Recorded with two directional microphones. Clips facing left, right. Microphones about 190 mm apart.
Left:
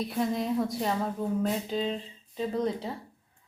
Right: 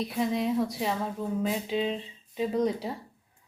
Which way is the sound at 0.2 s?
Centre (ahead or behind).